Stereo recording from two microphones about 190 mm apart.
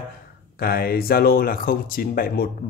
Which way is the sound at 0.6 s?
55° left (ahead or behind).